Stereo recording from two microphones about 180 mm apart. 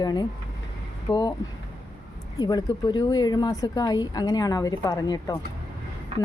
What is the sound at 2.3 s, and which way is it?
Speech, 20° left (ahead or behind).